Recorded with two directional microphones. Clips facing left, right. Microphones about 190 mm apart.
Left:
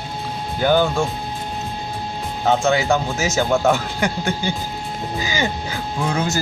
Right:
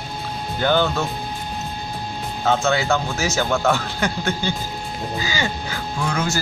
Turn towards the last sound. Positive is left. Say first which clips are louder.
# left 2 dB
turn(degrees=20)  # may be behind; listen again after turning